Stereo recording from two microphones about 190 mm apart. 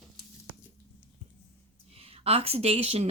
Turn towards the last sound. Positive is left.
turn(degrees=-30)  # may be behind; listen again after turning